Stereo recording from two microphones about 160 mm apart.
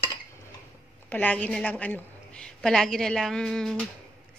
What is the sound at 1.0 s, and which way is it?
A woman's voice, 10° left (ahead or behind).